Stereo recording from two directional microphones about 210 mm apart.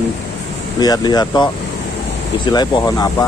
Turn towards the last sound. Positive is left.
turn(degrees=20)  # may be behind; listen again after turning